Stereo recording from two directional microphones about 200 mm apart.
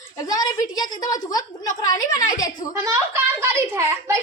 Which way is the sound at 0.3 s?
20° left (ahead or behind).